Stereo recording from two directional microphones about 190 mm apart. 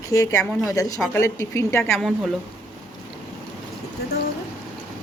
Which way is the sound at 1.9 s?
Centre (ahead or behind).